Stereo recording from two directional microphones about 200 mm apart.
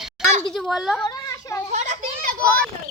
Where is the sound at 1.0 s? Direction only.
20° left (ahead or behind).